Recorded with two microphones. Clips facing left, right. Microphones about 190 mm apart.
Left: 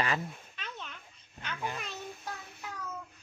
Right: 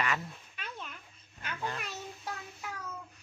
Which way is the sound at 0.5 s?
10° right (ahead or behind).